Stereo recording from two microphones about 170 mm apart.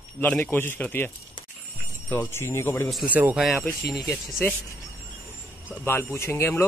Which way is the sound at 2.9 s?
Centre (ahead or behind).